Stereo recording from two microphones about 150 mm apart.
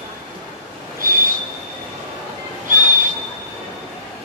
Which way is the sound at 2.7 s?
60° right (ahead or behind).